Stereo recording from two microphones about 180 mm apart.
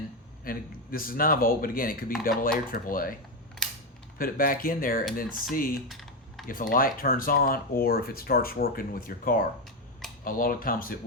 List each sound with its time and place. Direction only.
0.4 s speech: 55° left (ahead or behind)
4.2 s speech: 50° left (ahead or behind)
5.9 s typing: centre (ahead or behind)
6.5 s speech: 50° left (ahead or behind)